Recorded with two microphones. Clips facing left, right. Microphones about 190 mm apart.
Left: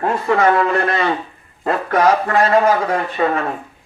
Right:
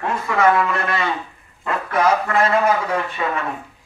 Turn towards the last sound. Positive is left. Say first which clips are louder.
# left 5 dB
turn(degrees=40)  # may be behind; listen again after turning